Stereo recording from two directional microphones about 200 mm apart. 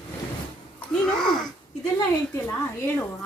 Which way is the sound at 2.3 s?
10° left (ahead or behind).